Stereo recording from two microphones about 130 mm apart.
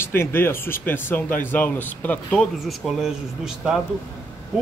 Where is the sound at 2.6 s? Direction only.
Centre (ahead or behind).